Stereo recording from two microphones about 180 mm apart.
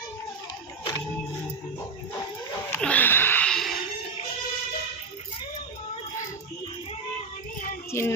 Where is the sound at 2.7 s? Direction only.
10° left (ahead or behind).